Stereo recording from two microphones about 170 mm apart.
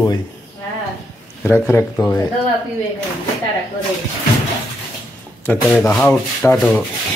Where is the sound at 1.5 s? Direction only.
15° left (ahead or behind).